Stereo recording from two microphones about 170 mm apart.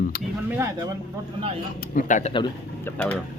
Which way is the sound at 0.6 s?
20° right (ahead or behind).